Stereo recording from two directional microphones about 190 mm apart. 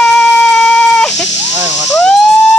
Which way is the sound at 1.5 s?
20° right (ahead or behind).